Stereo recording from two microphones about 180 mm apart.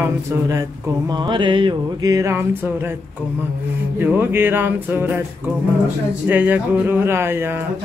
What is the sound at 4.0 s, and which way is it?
Speech, 10° right (ahead or behind).